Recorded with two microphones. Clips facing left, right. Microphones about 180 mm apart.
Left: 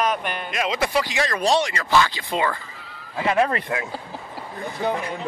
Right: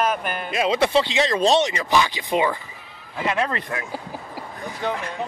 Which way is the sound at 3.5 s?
25° left (ahead or behind).